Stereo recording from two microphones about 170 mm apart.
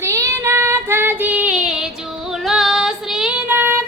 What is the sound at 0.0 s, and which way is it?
Child singing, 15° right (ahead or behind).